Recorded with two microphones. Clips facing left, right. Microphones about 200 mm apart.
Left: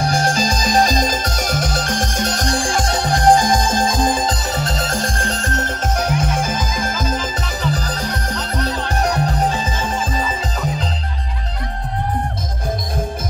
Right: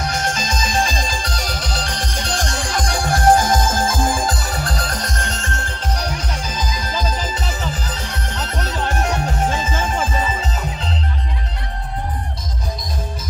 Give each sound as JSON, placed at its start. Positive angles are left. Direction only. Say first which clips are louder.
{"t": 0.0, "sound": "music", "louder": "left 5 dB", "side_deg": 35}